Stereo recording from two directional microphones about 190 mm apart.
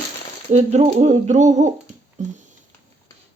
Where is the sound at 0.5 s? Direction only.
35° right (ahead or behind).